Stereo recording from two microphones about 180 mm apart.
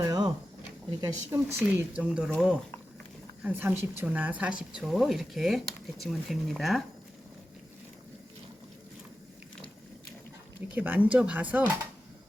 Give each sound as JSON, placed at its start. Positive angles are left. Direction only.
{"t": 0.0, "sound": "a sound", "side_deg": -20}
{"t": 1.3, "sound": "a woman's voice", "side_deg": -10}
{"t": 10.8, "sound": "a woman's voice", "side_deg": -10}